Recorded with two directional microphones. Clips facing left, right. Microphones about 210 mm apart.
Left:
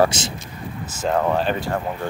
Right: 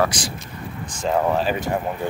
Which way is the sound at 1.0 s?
5° right (ahead or behind).